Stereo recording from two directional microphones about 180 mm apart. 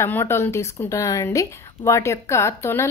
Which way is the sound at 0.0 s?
15° left (ahead or behind).